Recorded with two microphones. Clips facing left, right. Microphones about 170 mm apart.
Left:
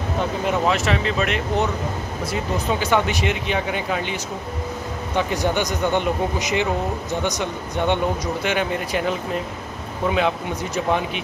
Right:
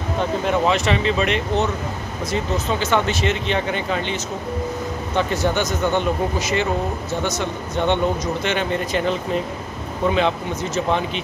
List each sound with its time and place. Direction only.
0.5 s speech: 5° left (ahead or behind)
10.1 s speech: 10° left (ahead or behind)